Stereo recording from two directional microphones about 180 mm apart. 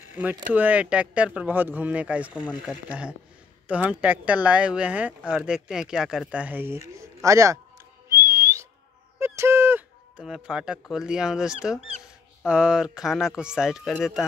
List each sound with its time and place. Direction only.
0.0 s mechanisms: 10° right (ahead or behind)
0.5 s speech: 10° right (ahead or behind)
8.1 s whistling: 15° right (ahead or behind)
9.2 s speech: 15° right (ahead or behind); by 14.2 s centre (ahead or behind)